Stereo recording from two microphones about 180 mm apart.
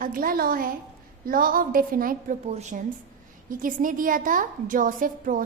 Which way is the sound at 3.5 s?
50° right (ahead or behind).